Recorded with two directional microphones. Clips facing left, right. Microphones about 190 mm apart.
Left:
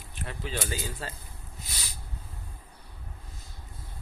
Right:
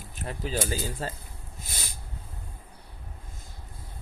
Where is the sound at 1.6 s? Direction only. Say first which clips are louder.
Right 3 dB; 50° right (ahead or behind).